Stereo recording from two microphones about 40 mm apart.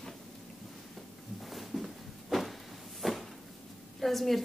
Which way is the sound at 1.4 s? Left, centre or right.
Centre.